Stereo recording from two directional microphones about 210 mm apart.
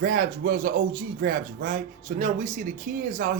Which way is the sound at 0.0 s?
40° right (ahead or behind).